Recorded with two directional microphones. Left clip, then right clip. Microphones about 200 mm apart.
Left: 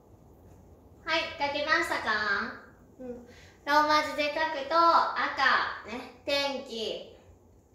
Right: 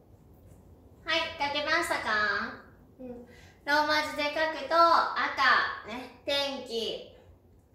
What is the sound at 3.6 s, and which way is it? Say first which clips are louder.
Child singing: left 2 dB; 15° left (ahead or behind).